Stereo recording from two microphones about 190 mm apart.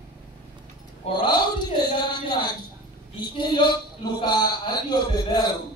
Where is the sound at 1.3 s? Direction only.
25° left (ahead or behind).